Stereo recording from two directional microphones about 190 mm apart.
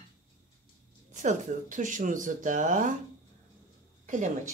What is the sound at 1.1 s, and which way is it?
Speech, 40° right (ahead or behind).